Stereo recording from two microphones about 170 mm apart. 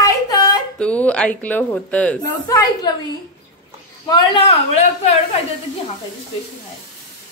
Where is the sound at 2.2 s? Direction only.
20° left (ahead or behind).